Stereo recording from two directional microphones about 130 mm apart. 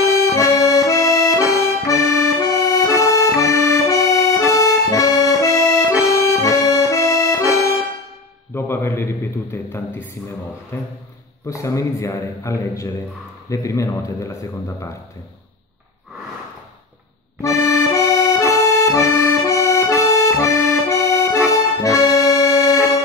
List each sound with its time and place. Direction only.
0.3 s accordion: 25° left (ahead or behind)
8.5 s a sound: 20° left (ahead or behind)
10.7 s music: 15° left (ahead or behind)
11.4 s a man's voice: 25° left (ahead or behind)
17.4 s accordion: 25° left (ahead or behind)